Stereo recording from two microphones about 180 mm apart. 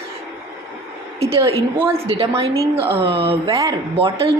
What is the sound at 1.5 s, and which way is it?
Speech, 35° right (ahead or behind).